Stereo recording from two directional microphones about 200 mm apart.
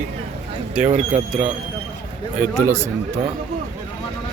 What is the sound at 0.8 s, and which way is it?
Speech, 10° right (ahead or behind).